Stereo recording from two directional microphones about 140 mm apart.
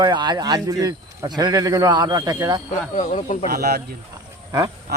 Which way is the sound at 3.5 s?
90° right.